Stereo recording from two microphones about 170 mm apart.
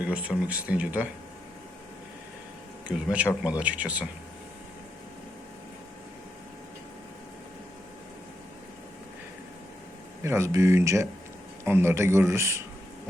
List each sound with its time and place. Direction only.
0.1 s speech: 10° right (ahead or behind)
2.8 s speech: 10° right (ahead or behind)
10.2 s speech: 15° right (ahead or behind)